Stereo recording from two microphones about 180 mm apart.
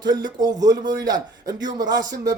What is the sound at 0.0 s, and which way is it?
Speech, 25° right (ahead or behind).